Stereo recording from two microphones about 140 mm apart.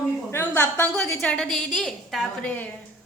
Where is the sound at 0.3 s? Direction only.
15° left (ahead or behind).